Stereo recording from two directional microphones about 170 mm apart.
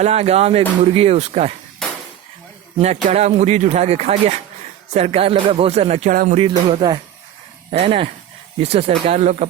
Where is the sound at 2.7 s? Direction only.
40° right (ahead or behind).